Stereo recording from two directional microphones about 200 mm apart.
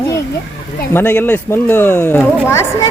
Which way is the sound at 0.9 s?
10° left (ahead or behind).